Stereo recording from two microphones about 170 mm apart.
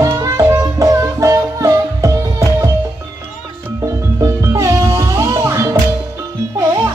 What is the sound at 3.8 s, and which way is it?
Music, 20° right (ahead or behind).